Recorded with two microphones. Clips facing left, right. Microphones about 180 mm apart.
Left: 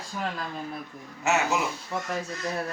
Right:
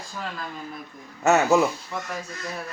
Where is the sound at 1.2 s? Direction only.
45° right (ahead or behind).